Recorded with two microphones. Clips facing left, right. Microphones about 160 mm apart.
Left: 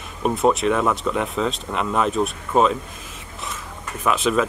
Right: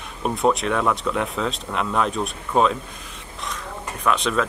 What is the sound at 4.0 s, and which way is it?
Speech, 5° left (ahead or behind).